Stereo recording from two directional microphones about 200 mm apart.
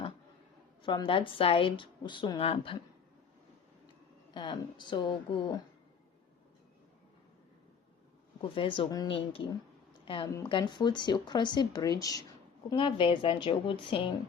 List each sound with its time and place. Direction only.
0.8 s a woman's voice: 25° left (ahead or behind)
4.4 s a woman's voice: 25° left (ahead or behind)
8.4 s a woman's voice: 25° left (ahead or behind)